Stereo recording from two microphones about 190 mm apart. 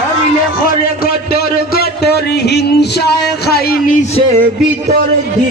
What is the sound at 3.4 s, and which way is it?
Speech, 55° left (ahead or behind).